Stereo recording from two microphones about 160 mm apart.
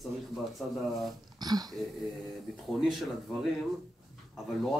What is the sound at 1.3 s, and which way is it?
Speech, 25° right (ahead or behind).